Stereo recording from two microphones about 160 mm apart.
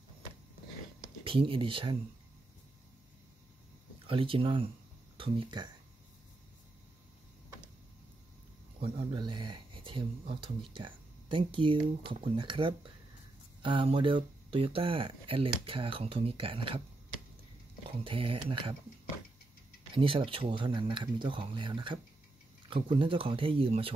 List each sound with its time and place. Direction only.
1.2 s speech: 35° right (ahead or behind)
4.1 s speech: 35° right (ahead or behind)
8.7 s speech: 35° right (ahead or behind)
17.9 s speech: 35° right (ahead or behind)
19.9 s speech: 35° right (ahead or behind)